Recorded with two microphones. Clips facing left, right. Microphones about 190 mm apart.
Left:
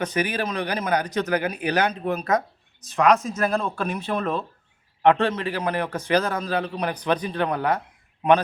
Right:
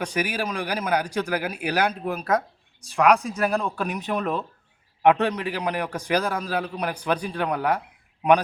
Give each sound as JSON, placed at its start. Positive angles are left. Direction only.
{"t": 0.0, "sound": "a man's voice", "side_deg": -10}